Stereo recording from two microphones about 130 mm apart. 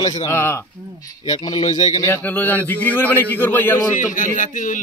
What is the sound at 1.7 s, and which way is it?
Speech, 60° left (ahead or behind).